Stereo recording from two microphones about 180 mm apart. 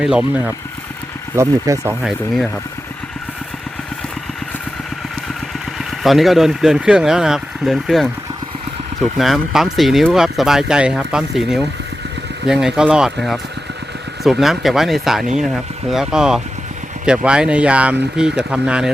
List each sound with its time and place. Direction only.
0.0 s speech: 5° right (ahead or behind)
2.0 s speech: centre (ahead or behind)
6.0 s speech: centre (ahead or behind)
9.1 s speech: centre (ahead or behind)